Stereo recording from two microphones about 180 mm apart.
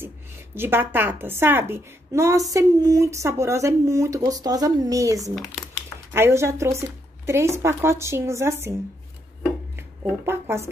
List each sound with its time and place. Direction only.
0.6 s a woman's voice: 10° right (ahead or behind)
5.3 s speech: 5° left (ahead or behind)
6.1 s a woman's voice: 15° right (ahead or behind)
9.8 s speech: 15° right (ahead or behind)